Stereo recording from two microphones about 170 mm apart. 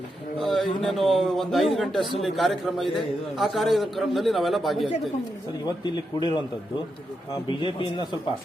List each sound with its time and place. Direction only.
0.3 s a man's voice: centre (ahead or behind)
5.6 s a man's voice: 25° left (ahead or behind)
7.4 s a man's voice: 30° left (ahead or behind)